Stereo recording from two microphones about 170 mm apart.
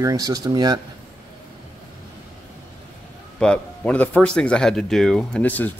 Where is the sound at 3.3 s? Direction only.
5° left (ahead or behind).